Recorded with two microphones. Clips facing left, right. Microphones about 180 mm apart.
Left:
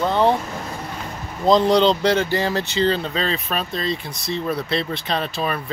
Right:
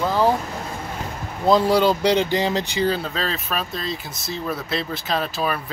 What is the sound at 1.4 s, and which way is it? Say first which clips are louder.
Speech: left 1 dB; 5° right (ahead or behind).